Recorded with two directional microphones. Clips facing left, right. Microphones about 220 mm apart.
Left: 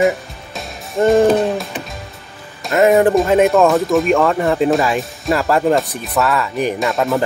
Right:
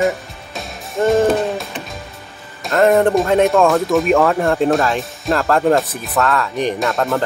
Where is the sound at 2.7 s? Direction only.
5° left (ahead or behind).